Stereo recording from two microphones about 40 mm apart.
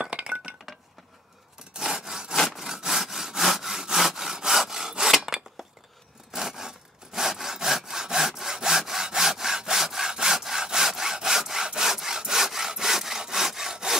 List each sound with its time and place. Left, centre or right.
0.0 s chink: right
1.8 s sawing: centre
5.2 s scissors: centre
6.3 s sawing: centre